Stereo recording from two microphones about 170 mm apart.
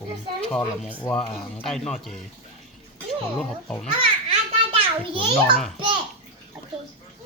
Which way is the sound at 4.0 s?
30° right (ahead or behind).